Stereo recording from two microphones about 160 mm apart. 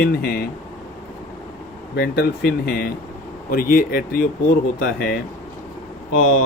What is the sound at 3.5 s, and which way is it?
Speech, 60° left (ahead or behind).